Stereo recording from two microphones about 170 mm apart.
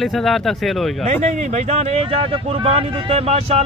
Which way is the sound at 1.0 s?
40° right (ahead or behind).